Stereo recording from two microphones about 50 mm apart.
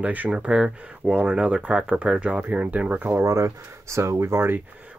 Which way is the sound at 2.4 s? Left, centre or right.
Right.